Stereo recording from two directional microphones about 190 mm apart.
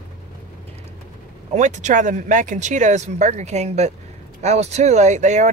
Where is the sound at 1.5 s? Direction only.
40° right (ahead or behind).